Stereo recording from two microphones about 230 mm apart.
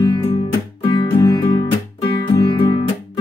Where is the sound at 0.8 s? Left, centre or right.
Centre.